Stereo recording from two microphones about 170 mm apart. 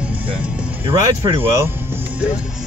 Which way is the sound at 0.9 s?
30° right (ahead or behind).